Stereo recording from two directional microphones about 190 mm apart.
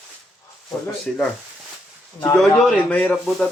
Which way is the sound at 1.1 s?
5° left (ahead or behind).